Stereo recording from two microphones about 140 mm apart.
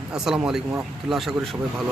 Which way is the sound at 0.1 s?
5° right (ahead or behind).